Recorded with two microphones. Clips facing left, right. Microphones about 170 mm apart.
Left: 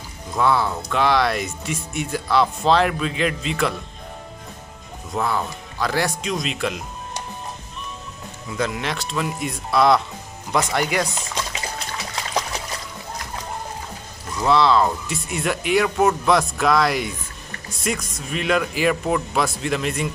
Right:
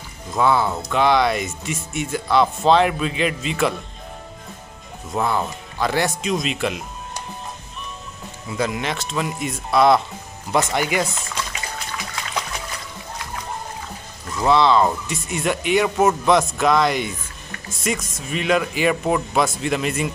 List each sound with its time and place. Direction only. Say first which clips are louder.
0.4 s speech: right 1 dB; 5° right (ahead or behind)
5.1 s speech: right 2 dB; centre (ahead or behind)
8.5 s speech: right 1 dB; 5° right (ahead or behind)
12.2 s trickle: left 4 dB; 30° left (ahead or behind)
14.5 s speech: right 1 dB; centre (ahead or behind)